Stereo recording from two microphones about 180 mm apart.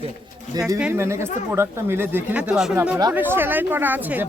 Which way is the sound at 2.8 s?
15° right (ahead or behind).